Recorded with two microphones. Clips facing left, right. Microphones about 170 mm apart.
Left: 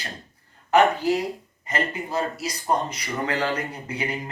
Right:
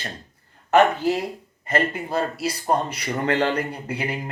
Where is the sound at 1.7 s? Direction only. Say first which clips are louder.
Right 4 dB; 60° right (ahead or behind).